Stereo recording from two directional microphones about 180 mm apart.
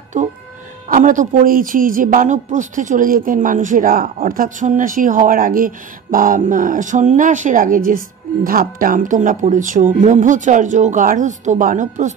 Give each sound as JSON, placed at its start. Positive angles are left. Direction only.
{"t": 0.1, "sound": "speech", "side_deg": -45}